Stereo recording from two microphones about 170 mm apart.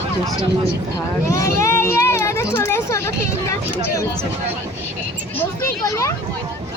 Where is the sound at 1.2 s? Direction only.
20° left (ahead or behind).